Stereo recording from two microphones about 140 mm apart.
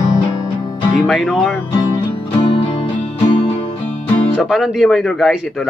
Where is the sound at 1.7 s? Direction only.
40° left (ahead or behind).